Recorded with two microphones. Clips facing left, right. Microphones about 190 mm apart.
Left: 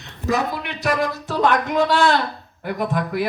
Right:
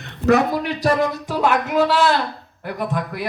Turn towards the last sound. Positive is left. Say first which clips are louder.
# left 2 dB
turn(degrees=0)  # may be behind; listen again after turning